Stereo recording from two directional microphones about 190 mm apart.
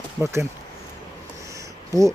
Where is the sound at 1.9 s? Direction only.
15° right (ahead or behind).